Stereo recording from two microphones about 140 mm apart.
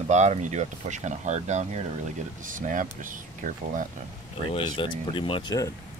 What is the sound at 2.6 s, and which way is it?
Speech, 70° right (ahead or behind).